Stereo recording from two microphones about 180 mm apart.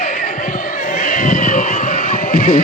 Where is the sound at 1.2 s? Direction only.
50° left (ahead or behind).